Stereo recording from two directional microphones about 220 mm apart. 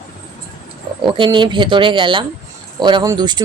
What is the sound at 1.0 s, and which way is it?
Speech, 20° right (ahead or behind).